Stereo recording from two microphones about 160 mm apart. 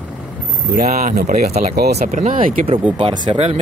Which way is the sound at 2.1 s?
50° right (ahead or behind).